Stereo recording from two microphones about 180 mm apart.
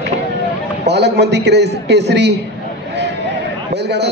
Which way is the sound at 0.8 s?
70° right (ahead or behind).